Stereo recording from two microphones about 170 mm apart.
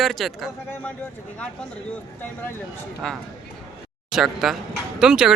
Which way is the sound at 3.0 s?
5° left (ahead or behind).